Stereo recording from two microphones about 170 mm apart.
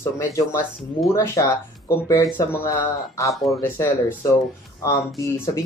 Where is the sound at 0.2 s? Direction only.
15° left (ahead or behind).